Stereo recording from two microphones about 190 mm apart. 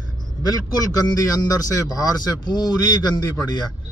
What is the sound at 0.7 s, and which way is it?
Speech, 20° left (ahead or behind).